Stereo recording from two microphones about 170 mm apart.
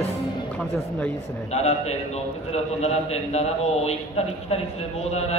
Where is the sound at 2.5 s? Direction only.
40° left (ahead or behind).